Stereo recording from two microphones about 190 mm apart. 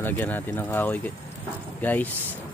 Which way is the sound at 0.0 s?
10° left (ahead or behind).